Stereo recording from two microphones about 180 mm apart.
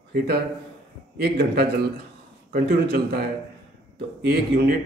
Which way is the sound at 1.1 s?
60° right (ahead or behind).